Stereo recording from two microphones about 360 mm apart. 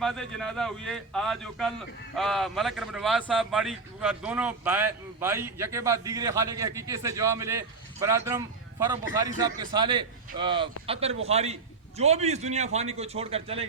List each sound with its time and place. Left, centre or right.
0.0 s a man's voice: centre